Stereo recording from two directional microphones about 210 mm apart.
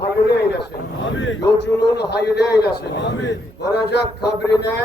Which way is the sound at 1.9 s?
50° left (ahead or behind).